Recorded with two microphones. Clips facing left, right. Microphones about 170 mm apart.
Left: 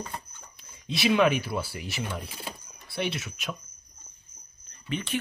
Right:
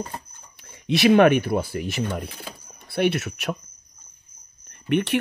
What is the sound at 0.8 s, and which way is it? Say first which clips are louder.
Speech: right 7 dB; 70° right (ahead or behind).